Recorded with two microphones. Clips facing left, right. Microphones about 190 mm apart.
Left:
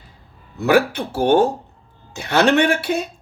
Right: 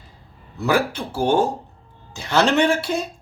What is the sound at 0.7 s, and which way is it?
Speech, 60° left (ahead or behind).